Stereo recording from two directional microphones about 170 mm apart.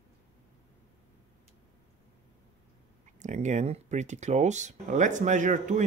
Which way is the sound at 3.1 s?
45° right (ahead or behind).